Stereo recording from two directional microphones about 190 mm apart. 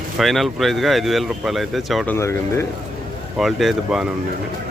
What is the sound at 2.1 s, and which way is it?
Speech, 15° left (ahead or behind).